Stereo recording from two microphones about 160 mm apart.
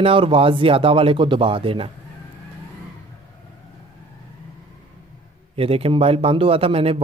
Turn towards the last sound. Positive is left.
turn(degrees=-35)  # may be behind; listen again after turning